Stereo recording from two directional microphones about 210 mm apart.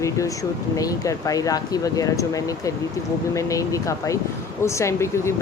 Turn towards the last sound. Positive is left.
turn(degrees=15)  # may be behind; listen again after turning